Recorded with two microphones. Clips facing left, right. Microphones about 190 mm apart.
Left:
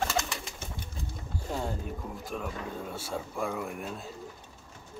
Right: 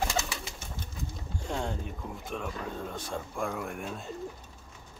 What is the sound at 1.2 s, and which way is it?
Speech, 5° left (ahead or behind).